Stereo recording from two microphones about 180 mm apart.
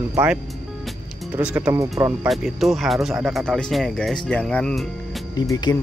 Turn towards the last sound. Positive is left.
turn(degrees=20)  # may be behind; listen again after turning